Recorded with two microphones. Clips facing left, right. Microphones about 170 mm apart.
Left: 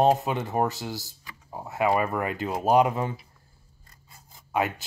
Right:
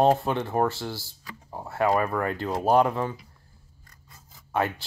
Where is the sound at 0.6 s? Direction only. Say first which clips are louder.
Right 1 dB; 15° left (ahead or behind).